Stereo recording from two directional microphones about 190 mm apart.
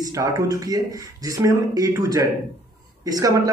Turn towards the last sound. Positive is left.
turn(degrees=-20)  # may be behind; listen again after turning